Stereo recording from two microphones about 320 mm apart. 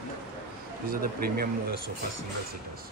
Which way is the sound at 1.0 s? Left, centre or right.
Right.